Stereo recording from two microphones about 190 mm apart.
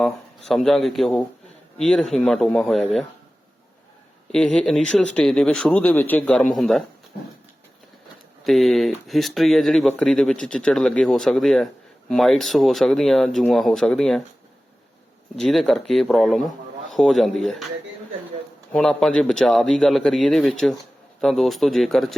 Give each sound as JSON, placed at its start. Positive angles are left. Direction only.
{"t": 0.0, "sound": "a man's voice", "side_deg": 0}
{"t": 4.3, "sound": "a man's voice", "side_deg": 5}
{"t": 8.4, "sound": "a man's voice", "side_deg": 0}
{"t": 15.4, "sound": "a man's voice", "side_deg": 5}
{"t": 18.7, "sound": "a man's voice", "side_deg": 5}